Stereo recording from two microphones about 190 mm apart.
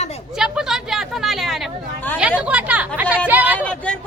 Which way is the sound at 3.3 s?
10° right (ahead or behind).